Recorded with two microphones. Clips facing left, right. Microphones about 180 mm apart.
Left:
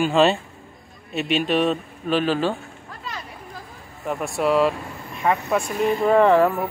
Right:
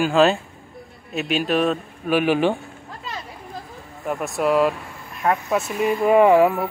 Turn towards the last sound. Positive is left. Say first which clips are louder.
# right 2 dB
turn(degrees=-10)  # may be behind; listen again after turning